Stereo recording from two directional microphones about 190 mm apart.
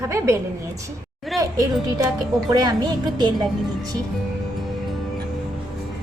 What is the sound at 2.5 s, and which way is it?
Speech, 20° right (ahead or behind).